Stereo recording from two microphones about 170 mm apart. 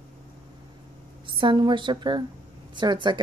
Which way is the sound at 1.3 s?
30° right (ahead or behind).